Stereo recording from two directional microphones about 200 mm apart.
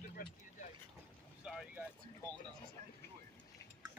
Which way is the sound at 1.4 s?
5° right (ahead or behind).